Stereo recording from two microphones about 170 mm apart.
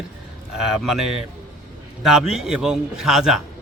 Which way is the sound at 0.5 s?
5° right (ahead or behind).